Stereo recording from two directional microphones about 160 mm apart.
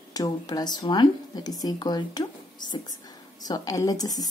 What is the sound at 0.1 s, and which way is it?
Speech, 25° left (ahead or behind).